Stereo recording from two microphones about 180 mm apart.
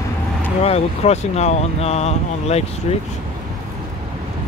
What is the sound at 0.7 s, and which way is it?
Speech, 35° left (ahead or behind).